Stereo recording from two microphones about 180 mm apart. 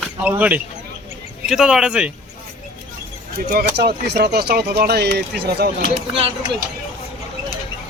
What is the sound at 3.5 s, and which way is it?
Speech, 60° right (ahead or behind).